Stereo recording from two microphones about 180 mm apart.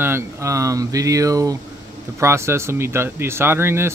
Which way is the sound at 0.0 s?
15° right (ahead or behind).